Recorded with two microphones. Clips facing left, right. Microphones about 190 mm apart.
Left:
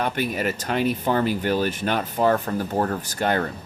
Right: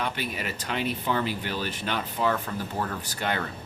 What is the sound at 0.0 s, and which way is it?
Speech, 45° left (ahead or behind).